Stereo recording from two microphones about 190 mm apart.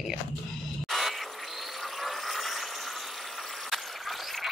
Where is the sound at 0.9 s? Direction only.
Centre (ahead or behind).